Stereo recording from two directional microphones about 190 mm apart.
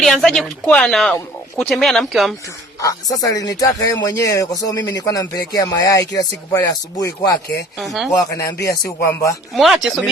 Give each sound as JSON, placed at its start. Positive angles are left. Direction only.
{"t": 0.0, "sound": "speech", "side_deg": 0}
{"t": 2.8, "sound": "speech", "side_deg": 20}
{"t": 7.8, "sound": "speech", "side_deg": 0}
{"t": 8.2, "sound": "speech", "side_deg": 20}
{"t": 8.5, "sound": "speech", "side_deg": 55}
{"t": 9.6, "sound": "speech", "side_deg": 0}